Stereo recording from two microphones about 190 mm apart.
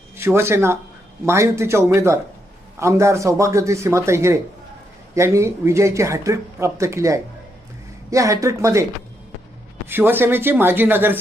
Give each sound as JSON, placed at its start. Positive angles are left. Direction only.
{"t": 0.2, "sound": "speech", "side_deg": -15}